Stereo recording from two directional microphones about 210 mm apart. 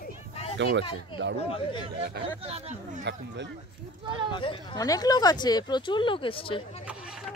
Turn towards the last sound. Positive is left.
turn(degrees=25)  # may be behind; listen again after turning